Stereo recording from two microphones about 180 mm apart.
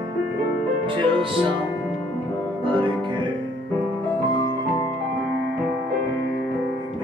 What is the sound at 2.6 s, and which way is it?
Music, 25° right (ahead or behind).